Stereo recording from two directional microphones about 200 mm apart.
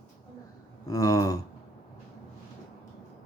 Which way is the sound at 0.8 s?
15° left (ahead or behind).